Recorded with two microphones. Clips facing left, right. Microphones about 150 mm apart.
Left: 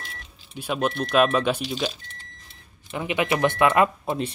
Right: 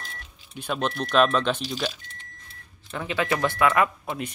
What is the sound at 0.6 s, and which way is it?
Speech, 5° left (ahead or behind).